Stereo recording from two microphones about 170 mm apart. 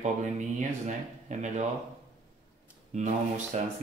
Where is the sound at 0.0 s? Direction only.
45° right (ahead or behind).